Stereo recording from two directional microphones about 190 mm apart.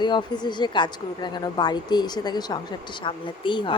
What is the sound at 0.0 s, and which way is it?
Speech, 25° left (ahead or behind).